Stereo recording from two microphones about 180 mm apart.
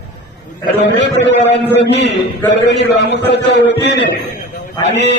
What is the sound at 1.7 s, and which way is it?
A man's voice, 70° left (ahead or behind).